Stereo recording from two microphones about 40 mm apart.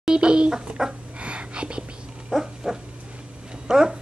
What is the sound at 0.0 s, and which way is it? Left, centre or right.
Dog, right.